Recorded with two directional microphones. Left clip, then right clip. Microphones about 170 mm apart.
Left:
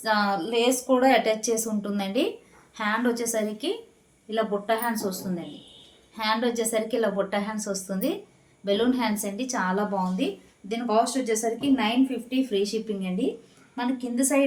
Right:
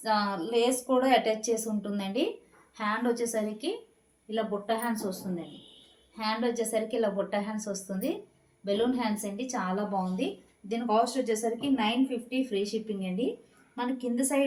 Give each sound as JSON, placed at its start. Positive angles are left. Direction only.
{"t": 0.0, "sound": "a woman's voice", "side_deg": 25}
{"t": 6.1, "sound": "a woman's voice", "side_deg": 25}